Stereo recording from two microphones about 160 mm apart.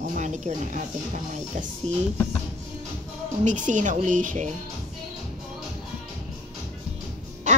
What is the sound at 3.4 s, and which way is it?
A woman's voice, 50° right (ahead or behind).